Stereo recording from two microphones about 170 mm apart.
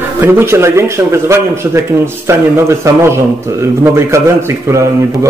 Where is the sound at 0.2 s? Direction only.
15° right (ahead or behind).